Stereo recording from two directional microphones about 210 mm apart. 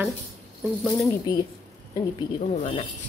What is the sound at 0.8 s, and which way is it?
Speech, 15° left (ahead or behind).